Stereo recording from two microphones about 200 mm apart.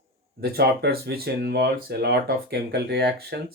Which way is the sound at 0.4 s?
50° right (ahead or behind).